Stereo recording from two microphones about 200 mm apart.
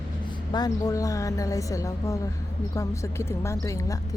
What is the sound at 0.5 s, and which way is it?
A woman's voice, 20° left (ahead or behind).